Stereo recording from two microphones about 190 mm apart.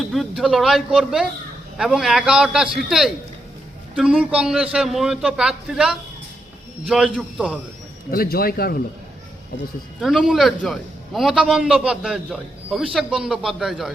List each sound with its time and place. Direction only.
0.0 s a man's voice: centre (ahead or behind)
8.1 s speech: 50° left (ahead or behind)
10.0 s a man's voice: centre (ahead or behind)